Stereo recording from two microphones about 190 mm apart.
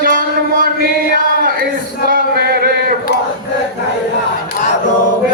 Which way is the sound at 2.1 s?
50° right (ahead or behind).